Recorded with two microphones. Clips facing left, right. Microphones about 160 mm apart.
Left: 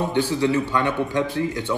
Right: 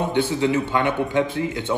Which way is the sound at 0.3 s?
15° right (ahead or behind).